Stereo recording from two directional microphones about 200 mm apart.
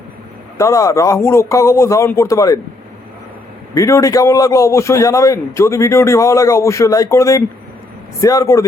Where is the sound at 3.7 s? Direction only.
15° left (ahead or behind).